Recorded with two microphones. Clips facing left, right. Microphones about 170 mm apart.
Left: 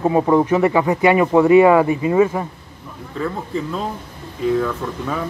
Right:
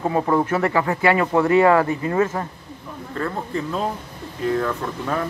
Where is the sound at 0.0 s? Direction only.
15° left (ahead or behind).